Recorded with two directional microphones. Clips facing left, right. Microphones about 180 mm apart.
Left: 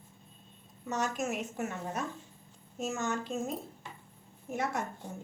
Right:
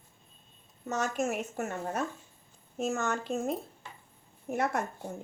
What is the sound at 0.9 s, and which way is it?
Speech, 50° right (ahead or behind).